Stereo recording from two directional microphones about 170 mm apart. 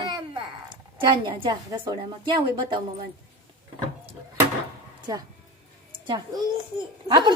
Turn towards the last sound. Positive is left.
turn(degrees=-25)  # may be behind; listen again after turning